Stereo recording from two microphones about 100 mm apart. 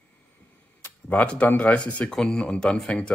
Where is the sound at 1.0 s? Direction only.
10° left (ahead or behind).